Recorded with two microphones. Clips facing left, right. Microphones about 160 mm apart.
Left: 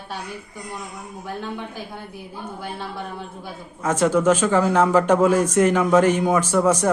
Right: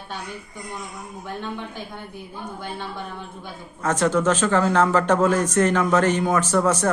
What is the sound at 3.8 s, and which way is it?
Speech, 10° left (ahead or behind).